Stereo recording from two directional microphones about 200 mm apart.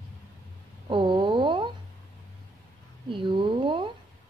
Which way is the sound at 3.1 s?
25° right (ahead or behind).